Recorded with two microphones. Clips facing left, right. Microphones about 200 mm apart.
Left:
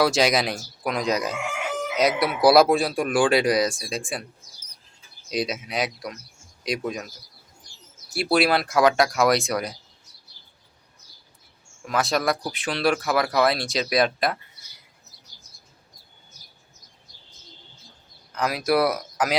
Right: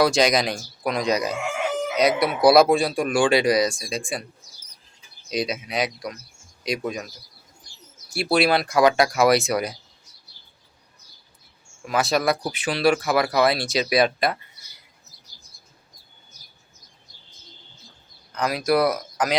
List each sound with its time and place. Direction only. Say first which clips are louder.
0.0 s speech: right 1 dB; 5° left (ahead or behind)
5.3 s speech: right 1 dB; centre (ahead or behind)
8.1 s speech: right 1 dB; centre (ahead or behind)
11.9 s speech: right 2 dB; 5° right (ahead or behind)
18.3 s speech: right 1 dB; 5° left (ahead or behind)